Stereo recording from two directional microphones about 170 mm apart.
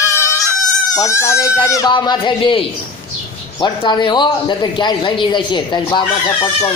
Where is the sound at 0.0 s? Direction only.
15° left (ahead or behind).